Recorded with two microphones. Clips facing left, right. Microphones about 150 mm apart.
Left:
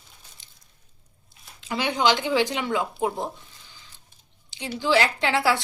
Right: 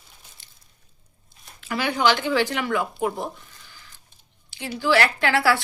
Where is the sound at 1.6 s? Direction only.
20° left (ahead or behind).